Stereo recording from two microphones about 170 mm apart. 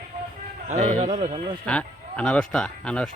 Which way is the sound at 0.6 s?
40° right (ahead or behind).